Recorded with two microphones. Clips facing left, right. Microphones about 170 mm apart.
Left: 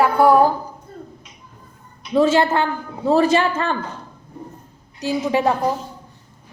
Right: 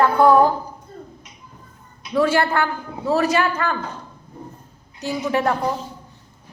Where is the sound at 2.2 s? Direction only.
20° left (ahead or behind).